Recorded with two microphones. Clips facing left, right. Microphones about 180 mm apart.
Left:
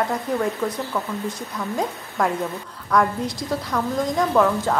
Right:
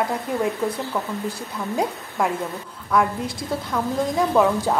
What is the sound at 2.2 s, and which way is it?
A woman's voice, 5° right (ahead or behind).